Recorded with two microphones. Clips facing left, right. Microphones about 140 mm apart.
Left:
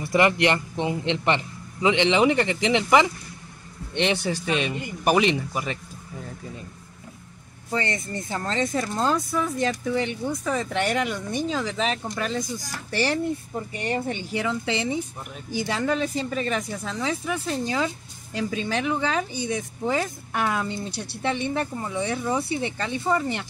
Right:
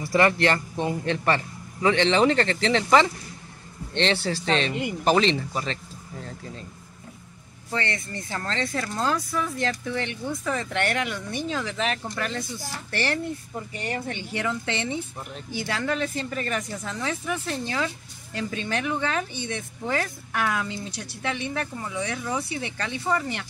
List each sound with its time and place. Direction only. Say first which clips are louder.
0.1 s speech: left 1 dB; 15° left (ahead or behind)
7.7 s speech: left 2 dB; 15° left (ahead or behind)